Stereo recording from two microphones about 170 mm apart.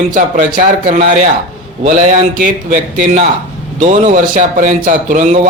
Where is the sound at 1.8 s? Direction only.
50° right (ahead or behind).